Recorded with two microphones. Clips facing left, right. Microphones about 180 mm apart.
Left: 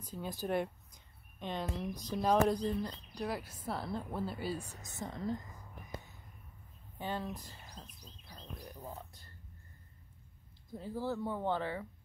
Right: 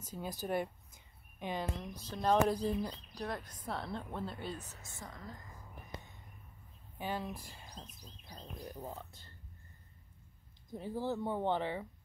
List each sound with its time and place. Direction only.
0.2 s speech: 5° right (ahead or behind)
1.8 s speech: 10° left (ahead or behind)
2.4 s speech: 5° right (ahead or behind)
3.3 s speech: 5° left (ahead or behind); by 5.3 s 25° left (ahead or behind)
7.0 s speech: 10° right (ahead or behind)
7.7 s bird: 40° right (ahead or behind)
8.0 s bird: 15° right (ahead or behind)
8.8 s speech: 25° right (ahead or behind)
10.7 s speech: 20° right (ahead or behind)